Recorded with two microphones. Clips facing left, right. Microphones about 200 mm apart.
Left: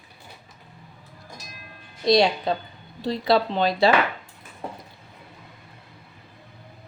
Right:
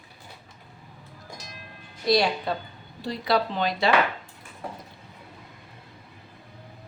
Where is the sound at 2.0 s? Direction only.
20° left (ahead or behind).